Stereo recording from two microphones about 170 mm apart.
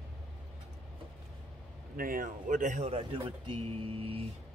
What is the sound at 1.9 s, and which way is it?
Speech, 55° right (ahead or behind).